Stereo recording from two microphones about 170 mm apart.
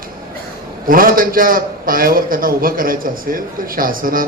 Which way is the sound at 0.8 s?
55° right (ahead or behind).